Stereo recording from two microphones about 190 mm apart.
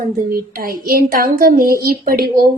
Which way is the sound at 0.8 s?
50° right (ahead or behind).